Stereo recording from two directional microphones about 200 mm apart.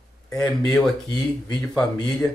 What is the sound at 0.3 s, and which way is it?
Speech, 15° left (ahead or behind).